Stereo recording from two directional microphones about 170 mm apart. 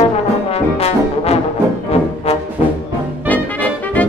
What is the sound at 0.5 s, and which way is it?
Brass instrument, 35° left (ahead or behind).